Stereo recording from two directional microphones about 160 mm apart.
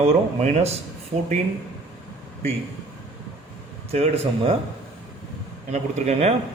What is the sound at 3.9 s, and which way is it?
Speech, 40° right (ahead or behind).